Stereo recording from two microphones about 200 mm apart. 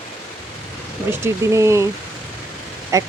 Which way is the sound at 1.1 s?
15° right (ahead or behind).